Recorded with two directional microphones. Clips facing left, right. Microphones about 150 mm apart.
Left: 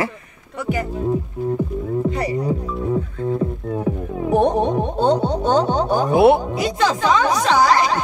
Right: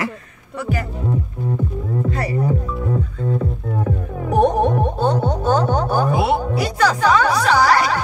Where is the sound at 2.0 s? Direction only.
15° left (ahead or behind).